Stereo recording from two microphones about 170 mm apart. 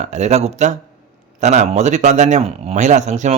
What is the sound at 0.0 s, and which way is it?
Speech, 45° right (ahead or behind).